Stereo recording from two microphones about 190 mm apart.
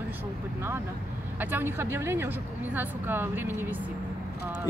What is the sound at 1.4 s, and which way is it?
A woman's voice, 10° right (ahead or behind).